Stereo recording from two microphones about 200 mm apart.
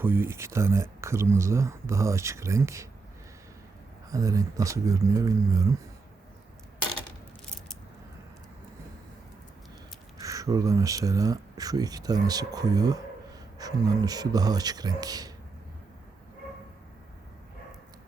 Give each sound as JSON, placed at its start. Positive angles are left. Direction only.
{"t": 0.0, "sound": "speech", "side_deg": -10}
{"t": 4.1, "sound": "speech", "side_deg": -15}
{"t": 10.2, "sound": "speech", "side_deg": -15}